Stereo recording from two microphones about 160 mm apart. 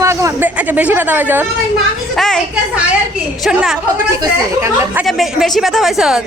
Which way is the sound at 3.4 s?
5° right (ahead or behind).